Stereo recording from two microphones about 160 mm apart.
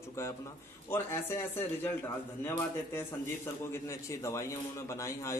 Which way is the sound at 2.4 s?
15° left (ahead or behind).